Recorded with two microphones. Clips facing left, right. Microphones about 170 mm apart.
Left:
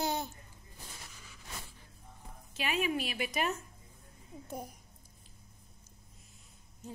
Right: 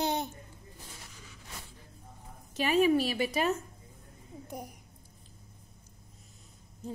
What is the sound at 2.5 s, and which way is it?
A woman's voice, 40° right (ahead or behind).